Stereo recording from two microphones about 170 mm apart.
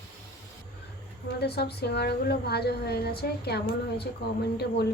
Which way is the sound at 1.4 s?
75° left (ahead or behind).